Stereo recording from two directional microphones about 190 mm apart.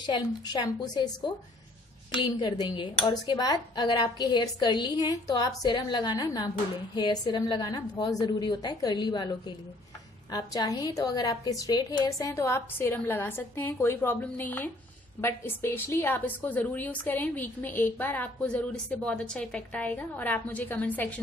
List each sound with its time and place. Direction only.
0.0 s speech: 25° left (ahead or behind)
10.3 s a woman's voice: 20° left (ahead or behind)